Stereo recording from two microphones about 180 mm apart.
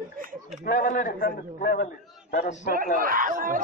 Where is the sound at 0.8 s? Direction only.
50° left (ahead or behind).